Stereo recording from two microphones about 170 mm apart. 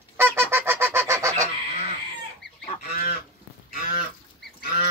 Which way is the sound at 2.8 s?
55° left (ahead or behind).